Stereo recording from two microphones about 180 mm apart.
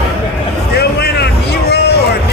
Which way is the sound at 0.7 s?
65° left (ahead or behind).